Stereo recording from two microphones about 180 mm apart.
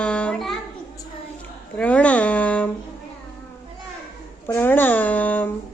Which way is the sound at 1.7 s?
5° left (ahead or behind).